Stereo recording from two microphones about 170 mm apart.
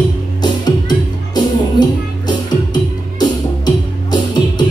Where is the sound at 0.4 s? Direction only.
25° left (ahead or behind).